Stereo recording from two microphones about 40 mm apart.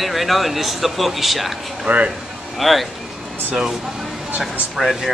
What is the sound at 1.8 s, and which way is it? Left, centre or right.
Speech, right.